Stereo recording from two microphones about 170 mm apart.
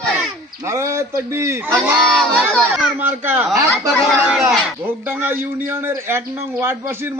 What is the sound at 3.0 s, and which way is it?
A child's voice, 10° right (ahead or behind).